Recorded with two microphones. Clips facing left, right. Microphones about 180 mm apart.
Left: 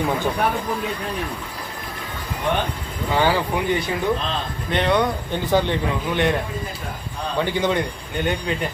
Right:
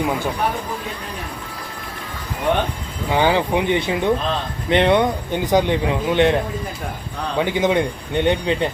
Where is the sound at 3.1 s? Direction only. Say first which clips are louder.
Right 3 dB; 20° right (ahead or behind).